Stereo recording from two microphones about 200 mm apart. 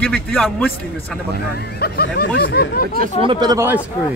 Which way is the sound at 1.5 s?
50° left (ahead or behind).